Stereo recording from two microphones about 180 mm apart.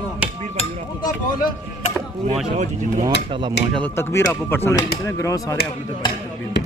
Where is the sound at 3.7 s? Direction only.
10° left (ahead or behind).